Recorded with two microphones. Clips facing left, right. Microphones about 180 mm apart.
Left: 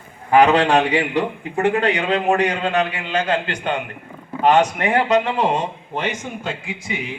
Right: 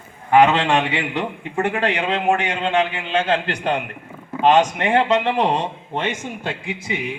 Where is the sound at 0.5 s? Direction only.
40° left (ahead or behind).